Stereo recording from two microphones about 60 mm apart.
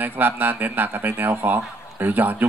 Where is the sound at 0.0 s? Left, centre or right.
Right.